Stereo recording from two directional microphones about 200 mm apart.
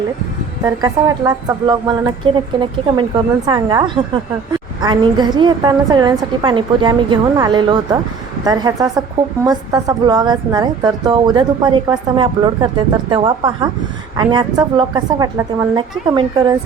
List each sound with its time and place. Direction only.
0.6 s a woman's voice: 20° right (ahead or behind)